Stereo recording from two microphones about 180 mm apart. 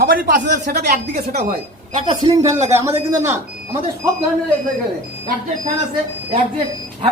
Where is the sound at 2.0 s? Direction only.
20° right (ahead or behind).